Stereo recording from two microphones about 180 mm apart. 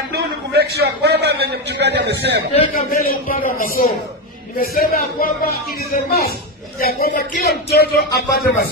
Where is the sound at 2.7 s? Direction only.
50° left (ahead or behind).